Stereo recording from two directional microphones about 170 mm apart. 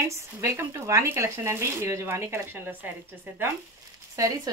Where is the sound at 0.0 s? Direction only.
15° right (ahead or behind).